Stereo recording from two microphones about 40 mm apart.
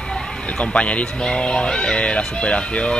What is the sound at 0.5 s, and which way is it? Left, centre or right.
Speech, left.